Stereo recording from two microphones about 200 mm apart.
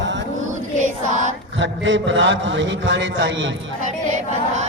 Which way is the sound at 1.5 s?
65° right (ahead or behind).